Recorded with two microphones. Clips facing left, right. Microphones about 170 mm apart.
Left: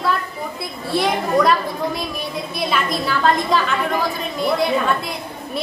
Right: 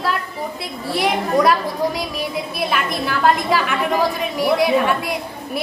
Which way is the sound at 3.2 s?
10° right (ahead or behind).